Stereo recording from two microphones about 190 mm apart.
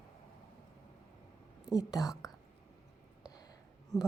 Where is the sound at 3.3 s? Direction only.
20° left (ahead or behind).